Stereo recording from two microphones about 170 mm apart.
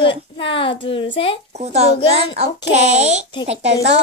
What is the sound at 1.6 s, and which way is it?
Speech, 40° right (ahead or behind).